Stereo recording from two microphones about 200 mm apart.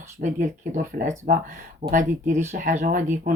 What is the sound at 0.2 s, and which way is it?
Speech, 40° right (ahead or behind).